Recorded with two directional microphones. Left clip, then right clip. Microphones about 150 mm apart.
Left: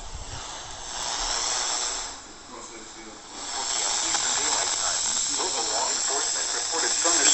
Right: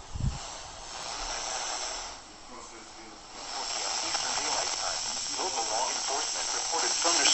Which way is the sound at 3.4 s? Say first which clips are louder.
Left 5 dB; 10° right (ahead or behind).